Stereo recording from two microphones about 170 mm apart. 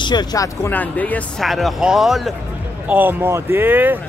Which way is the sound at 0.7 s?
10° left (ahead or behind).